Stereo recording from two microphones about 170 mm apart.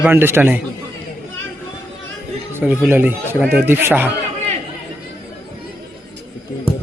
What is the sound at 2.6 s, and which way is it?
A man's voice, 10° right (ahead or behind).